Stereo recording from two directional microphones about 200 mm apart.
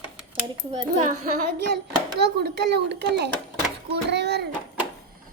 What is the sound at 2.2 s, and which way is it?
A child's voice, 55° right (ahead or behind).